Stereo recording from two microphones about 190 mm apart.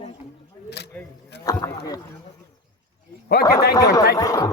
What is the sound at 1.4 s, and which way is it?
Speech, 20° left (ahead or behind).